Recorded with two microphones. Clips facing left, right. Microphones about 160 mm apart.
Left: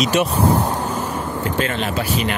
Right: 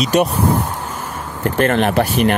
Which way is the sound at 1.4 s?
55° right (ahead or behind).